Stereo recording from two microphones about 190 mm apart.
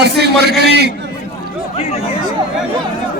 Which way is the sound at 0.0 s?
60° right (ahead or behind).